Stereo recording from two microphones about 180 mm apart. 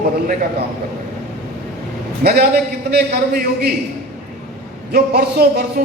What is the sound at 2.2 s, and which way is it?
A woman's voice, 60° right (ahead or behind).